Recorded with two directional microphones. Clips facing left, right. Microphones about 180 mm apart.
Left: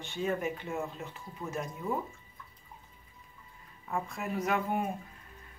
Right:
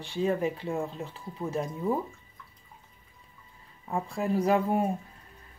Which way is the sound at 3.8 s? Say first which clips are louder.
Right 6 dB; 30° right (ahead or behind).